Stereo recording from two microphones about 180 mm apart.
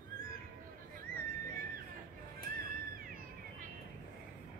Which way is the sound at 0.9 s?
50° right (ahead or behind).